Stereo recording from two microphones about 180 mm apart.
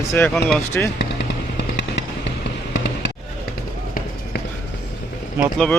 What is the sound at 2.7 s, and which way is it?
Music, 80° left.